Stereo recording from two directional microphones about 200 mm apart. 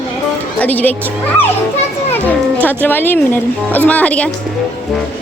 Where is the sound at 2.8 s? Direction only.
10° left (ahead or behind).